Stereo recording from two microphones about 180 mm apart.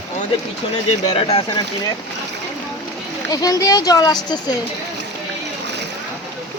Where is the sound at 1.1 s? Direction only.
30° left (ahead or behind).